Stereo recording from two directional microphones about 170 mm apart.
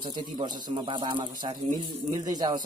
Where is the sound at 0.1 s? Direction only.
25° right (ahead or behind).